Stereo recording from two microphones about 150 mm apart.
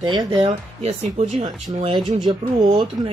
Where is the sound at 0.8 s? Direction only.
45° right (ahead or behind).